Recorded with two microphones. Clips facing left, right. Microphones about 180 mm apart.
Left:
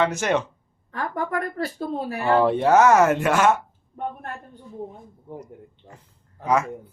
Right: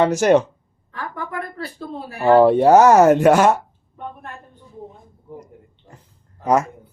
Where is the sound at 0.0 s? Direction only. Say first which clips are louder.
Right 7 dB; 40° right (ahead or behind).